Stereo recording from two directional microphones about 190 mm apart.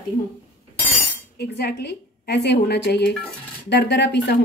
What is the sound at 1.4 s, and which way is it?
A woman's voice, 60° left (ahead or behind).